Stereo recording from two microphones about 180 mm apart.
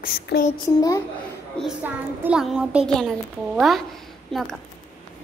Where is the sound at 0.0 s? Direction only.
55° left (ahead or behind).